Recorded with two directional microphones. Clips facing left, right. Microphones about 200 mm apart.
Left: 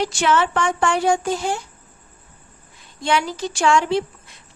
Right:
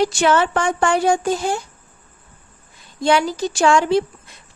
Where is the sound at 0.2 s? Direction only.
40° right (ahead or behind).